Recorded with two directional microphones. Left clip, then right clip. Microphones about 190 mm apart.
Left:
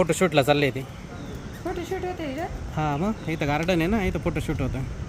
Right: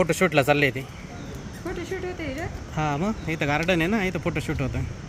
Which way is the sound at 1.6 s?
75° left (ahead or behind).